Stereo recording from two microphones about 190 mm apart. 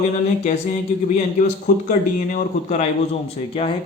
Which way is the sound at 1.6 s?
45° left (ahead or behind).